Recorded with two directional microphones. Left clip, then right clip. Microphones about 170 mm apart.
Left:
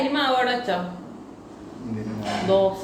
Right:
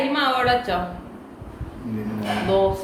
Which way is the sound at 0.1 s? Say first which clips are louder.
Right 3 dB; centre (ahead or behind).